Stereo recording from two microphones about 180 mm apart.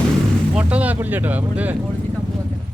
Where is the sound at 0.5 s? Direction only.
5° right (ahead or behind).